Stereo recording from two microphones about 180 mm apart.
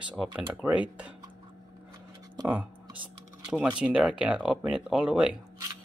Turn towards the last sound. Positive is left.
turn(degrees=-5)  # may be behind; listen again after turning